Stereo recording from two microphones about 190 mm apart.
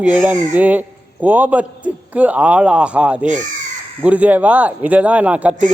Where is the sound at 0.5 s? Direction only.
10° right (ahead or behind).